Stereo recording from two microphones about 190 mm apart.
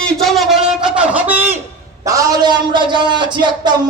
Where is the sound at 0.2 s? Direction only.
Centre (ahead or behind).